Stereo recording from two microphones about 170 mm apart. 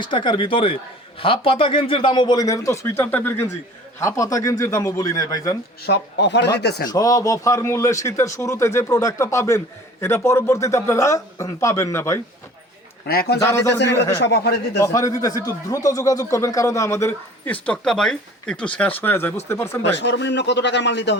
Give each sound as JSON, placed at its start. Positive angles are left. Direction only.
{"t": 0.0, "sound": "a man's voice", "side_deg": 30}
{"t": 5.8, "sound": "a man's voice", "side_deg": 85}
{"t": 6.6, "sound": "a man's voice", "side_deg": 75}
{"t": 6.8, "sound": "a man's voice", "side_deg": 20}
{"t": 13.1, "sound": "a man's voice", "side_deg": 70}
{"t": 13.4, "sound": "a man's voice", "side_deg": 15}
{"t": 14.2, "sound": "a man's voice", "side_deg": 75}
{"t": 14.8, "sound": "a man's voice", "side_deg": 20}
{"t": 20.0, "sound": "a man's voice", "side_deg": 90}